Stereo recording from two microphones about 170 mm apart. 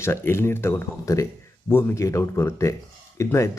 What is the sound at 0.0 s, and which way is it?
Speech, 15° left (ahead or behind).